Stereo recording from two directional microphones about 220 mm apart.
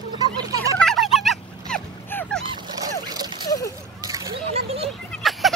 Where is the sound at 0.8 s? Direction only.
Centre (ahead or behind).